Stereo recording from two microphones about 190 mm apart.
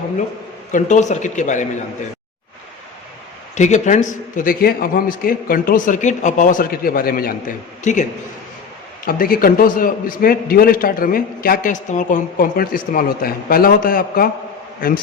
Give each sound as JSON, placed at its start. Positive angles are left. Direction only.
{"t": 0.7, "sound": "speech", "side_deg": 40}
{"t": 3.5, "sound": "a man's voice", "side_deg": 40}
{"t": 9.0, "sound": "a man's voice", "side_deg": 50}